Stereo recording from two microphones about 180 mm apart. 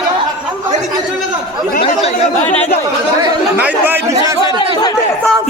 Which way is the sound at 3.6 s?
10° right (ahead or behind).